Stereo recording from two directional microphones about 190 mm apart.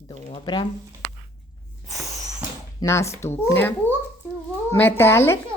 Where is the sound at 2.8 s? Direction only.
15° left (ahead or behind).